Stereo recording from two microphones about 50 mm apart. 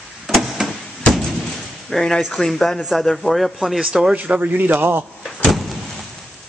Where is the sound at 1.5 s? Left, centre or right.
Centre.